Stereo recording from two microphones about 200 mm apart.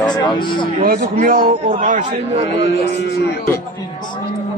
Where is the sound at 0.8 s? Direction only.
45° right (ahead or behind).